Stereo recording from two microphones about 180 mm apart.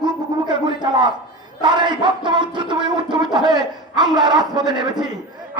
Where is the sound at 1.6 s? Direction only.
25° right (ahead or behind).